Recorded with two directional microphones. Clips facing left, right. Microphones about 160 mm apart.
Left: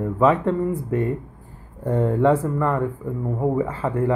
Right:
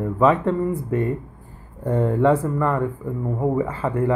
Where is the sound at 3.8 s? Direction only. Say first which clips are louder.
Even; 30° left (ahead or behind).